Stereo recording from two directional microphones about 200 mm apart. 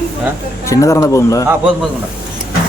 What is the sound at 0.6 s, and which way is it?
Speech, 15° left (ahead or behind).